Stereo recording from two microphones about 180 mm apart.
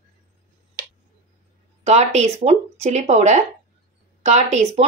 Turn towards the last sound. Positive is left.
turn(degrees=-40)  # may be behind; listen again after turning